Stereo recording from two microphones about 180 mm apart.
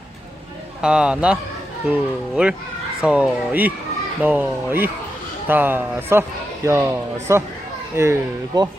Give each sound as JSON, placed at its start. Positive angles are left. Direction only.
{"t": 0.8, "sound": "speech", "side_deg": -5}